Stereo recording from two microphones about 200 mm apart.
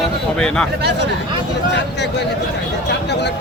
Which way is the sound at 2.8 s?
55° left (ahead or behind).